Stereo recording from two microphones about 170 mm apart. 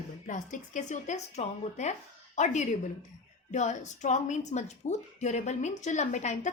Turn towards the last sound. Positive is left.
turn(degrees=45)  # may be behind; listen again after turning